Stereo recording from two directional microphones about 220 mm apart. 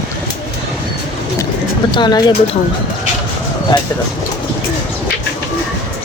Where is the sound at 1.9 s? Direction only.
20° left (ahead or behind).